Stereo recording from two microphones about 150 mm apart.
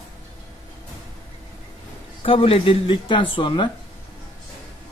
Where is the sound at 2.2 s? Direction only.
35° left (ahead or behind).